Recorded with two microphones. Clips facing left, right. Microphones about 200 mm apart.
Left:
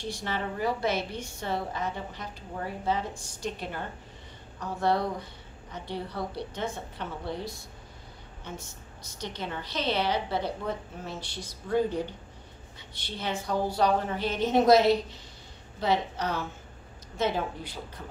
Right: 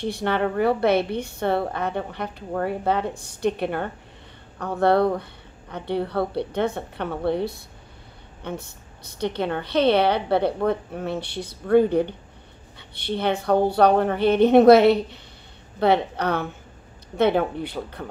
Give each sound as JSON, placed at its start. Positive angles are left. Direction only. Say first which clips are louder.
{"t": 0.0, "sound": "a woman's voice", "louder": "right 10 dB", "side_deg": -60}